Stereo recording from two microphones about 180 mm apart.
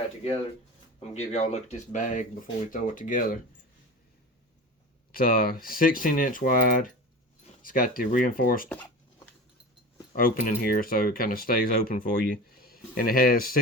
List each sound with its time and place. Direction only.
0.9 s speech: 35° left (ahead or behind)
5.1 s speech: 55° left (ahead or behind)
10.1 s speech: 50° left (ahead or behind)